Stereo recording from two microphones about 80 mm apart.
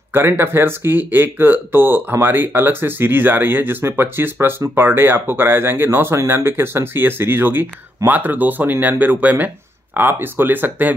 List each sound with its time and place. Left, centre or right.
0.1 s speech: right